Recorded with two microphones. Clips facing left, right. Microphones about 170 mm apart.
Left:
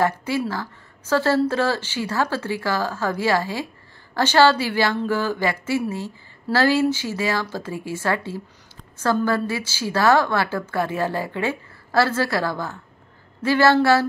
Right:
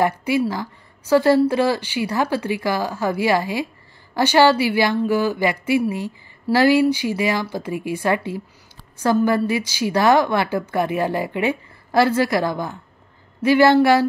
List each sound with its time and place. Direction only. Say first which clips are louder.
0.0 s speech: right 3 dB; 10° right (ahead or behind)